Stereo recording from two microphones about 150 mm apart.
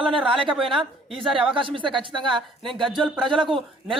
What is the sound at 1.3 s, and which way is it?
Speech, 35° right (ahead or behind).